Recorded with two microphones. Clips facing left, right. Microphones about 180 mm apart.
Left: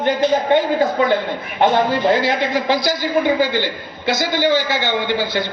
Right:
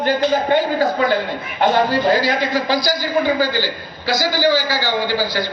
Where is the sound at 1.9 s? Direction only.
25° left (ahead or behind).